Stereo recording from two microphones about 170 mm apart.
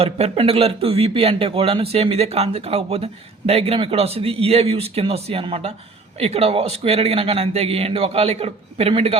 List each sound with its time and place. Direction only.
0.0 s speech: 35° right (ahead or behind)